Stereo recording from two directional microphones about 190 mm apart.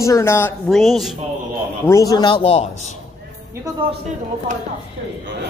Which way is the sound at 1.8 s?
15° left (ahead or behind).